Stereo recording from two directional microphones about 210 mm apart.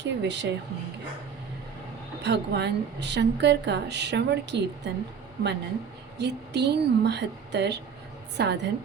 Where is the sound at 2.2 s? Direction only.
55° right (ahead or behind).